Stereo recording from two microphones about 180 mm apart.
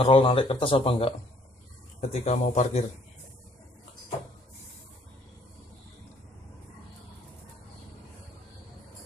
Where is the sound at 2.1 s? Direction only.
40° left (ahead or behind).